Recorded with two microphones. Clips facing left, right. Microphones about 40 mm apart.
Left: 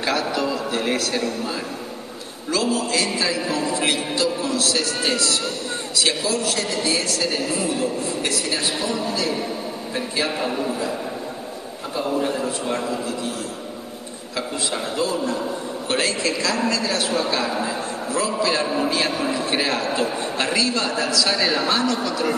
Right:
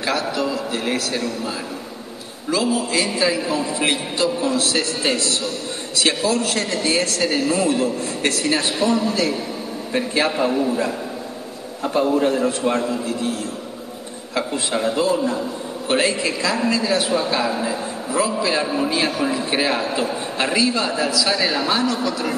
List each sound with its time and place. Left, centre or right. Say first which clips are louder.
0.0 s a man's voice: even; centre
2.5 s a man's voice: right 2 dB; centre; by 10.3 s right
10.4 s a man's voice: right 5 dB; centre
12.3 s a man's voice: right 5 dB; right
14.3 s a man's voice: right 4 dB; right; by 22.3 s centre